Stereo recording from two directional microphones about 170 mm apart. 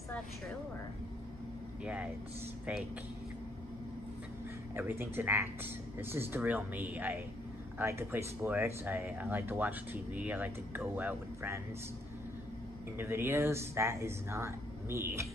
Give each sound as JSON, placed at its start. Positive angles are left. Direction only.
{"t": 4.7, "sound": "speech", "side_deg": -10}
{"t": 12.9, "sound": "speech", "side_deg": -15}